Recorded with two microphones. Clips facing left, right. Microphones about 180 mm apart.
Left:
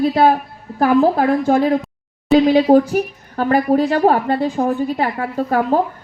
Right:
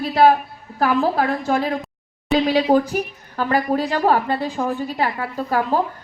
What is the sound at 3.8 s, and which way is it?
A woman's voice, 50° left (ahead or behind).